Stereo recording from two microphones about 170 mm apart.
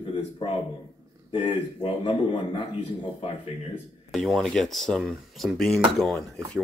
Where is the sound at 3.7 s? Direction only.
Centre (ahead or behind).